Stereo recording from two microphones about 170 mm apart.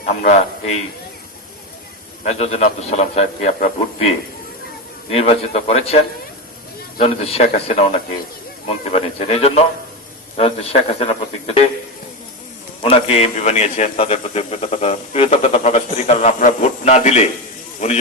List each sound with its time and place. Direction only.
0.0 s a man's voice: 45° left (ahead or behind)
2.2 s a man's voice: 40° left (ahead or behind)
5.1 s a man's voice: 35° left (ahead or behind)
7.0 s a man's voice: 35° left (ahead or behind)
12.8 s a man's voice: 35° left (ahead or behind)